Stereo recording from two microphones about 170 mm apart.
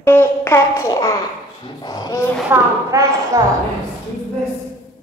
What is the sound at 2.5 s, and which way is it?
Speech, 20° right (ahead or behind).